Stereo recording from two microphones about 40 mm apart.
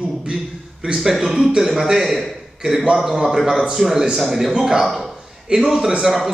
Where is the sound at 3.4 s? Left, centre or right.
Centre.